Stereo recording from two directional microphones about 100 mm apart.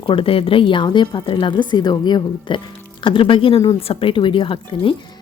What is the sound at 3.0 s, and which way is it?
Speech, 60° left (ahead or behind).